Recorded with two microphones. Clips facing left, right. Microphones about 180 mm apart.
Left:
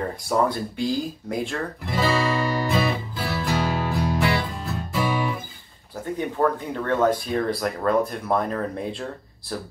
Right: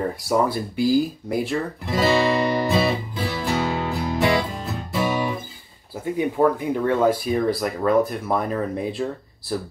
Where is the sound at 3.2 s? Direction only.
20° right (ahead or behind).